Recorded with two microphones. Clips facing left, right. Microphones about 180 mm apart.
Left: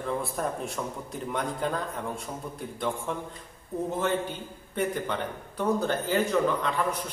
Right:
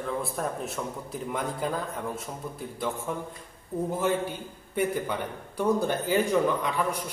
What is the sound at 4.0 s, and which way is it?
A man's voice, 10° right (ahead or behind).